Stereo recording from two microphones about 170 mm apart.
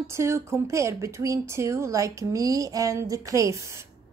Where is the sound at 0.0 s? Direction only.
15° right (ahead or behind).